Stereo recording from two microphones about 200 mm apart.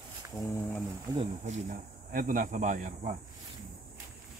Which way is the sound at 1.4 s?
40° right (ahead or behind).